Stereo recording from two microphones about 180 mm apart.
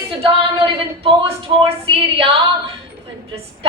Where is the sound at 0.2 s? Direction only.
30° right (ahead or behind).